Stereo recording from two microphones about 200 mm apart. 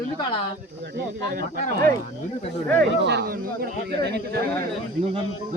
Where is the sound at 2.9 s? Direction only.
60° right (ahead or behind).